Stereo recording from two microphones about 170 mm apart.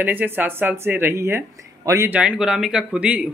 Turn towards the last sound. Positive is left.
turn(degrees=-5)  # may be behind; listen again after turning